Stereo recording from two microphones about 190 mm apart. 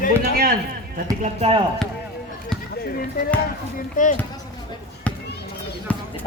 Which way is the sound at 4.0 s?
45° left (ahead or behind).